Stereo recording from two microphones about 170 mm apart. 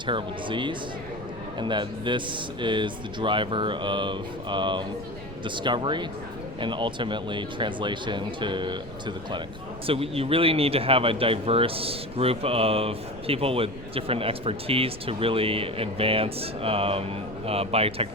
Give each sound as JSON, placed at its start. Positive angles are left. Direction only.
{"t": 0.0, "sound": "speech", "side_deg": -30}